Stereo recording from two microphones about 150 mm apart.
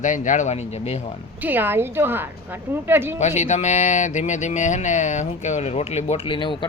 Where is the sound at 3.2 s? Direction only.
50° left (ahead or behind).